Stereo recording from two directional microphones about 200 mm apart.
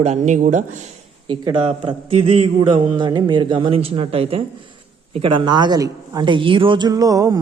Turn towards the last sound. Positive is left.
turn(degrees=-15)  # may be behind; listen again after turning